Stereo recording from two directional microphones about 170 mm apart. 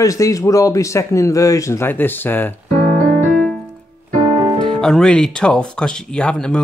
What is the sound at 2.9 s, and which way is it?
Piano, 45° right (ahead or behind).